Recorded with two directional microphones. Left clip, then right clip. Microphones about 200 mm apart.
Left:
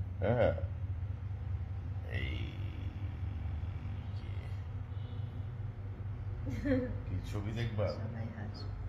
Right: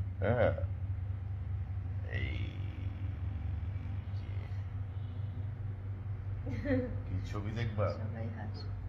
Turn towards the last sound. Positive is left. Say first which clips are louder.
# right 1 dB
turn(degrees=0)  # may be behind; listen again after turning